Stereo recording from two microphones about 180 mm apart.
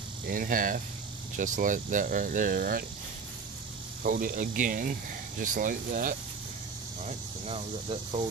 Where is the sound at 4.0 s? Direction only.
50° right (ahead or behind).